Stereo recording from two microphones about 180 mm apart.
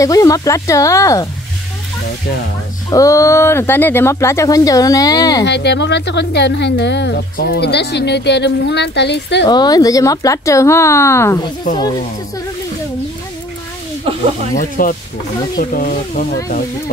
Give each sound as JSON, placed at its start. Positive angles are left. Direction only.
{"t": 0.0, "sound": "speech", "side_deg": 20}
{"t": 2.9, "sound": "speech", "side_deg": 20}
{"t": 5.4, "sound": "speech", "side_deg": 70}
{"t": 9.5, "sound": "speech", "side_deg": 20}
{"t": 14.5, "sound": "speech", "side_deg": 50}